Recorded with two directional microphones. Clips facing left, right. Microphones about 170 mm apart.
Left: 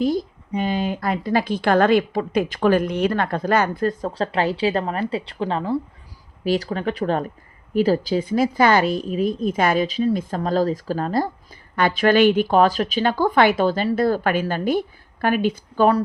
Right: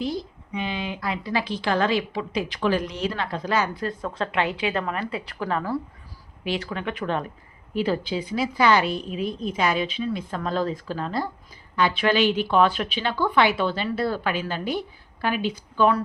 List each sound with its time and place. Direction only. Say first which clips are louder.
0.0 s a woman's voice: left 7 dB; 45° left (ahead or behind); by 5.8 s 25° left (ahead or behind)
6.4 s a woman's voice: left 6 dB; 40° left (ahead or behind)